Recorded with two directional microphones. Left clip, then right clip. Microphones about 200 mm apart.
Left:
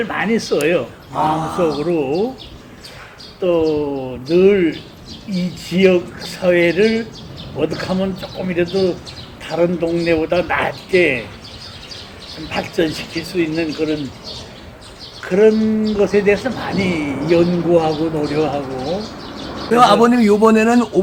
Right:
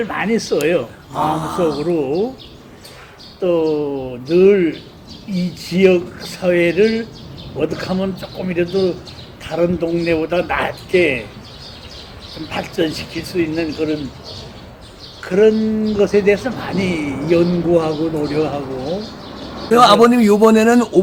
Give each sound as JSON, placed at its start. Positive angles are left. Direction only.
{"t": 0.0, "sound": "speech", "side_deg": -5}
{"t": 1.1, "sound": "a man's voice", "side_deg": -30}
{"t": 1.8, "sound": "speech", "side_deg": -5}
{"t": 3.4, "sound": "speech", "side_deg": -5}
{"t": 12.5, "sound": "speech", "side_deg": -10}
{"t": 15.2, "sound": "speech", "side_deg": -10}
{"t": 19.7, "sound": "a man's voice", "side_deg": -35}